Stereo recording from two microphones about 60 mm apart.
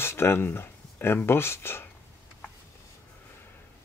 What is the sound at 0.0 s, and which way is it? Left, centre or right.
Speech, left.